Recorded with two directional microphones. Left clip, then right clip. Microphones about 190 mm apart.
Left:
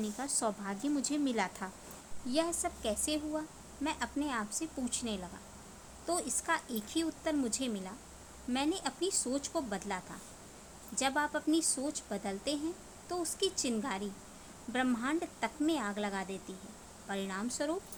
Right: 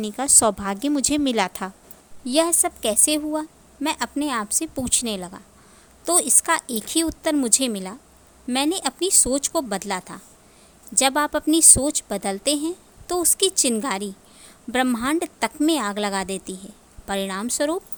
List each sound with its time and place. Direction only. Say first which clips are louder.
0.0 s a woman's voice: right 15 dB; 50° right (ahead or behind)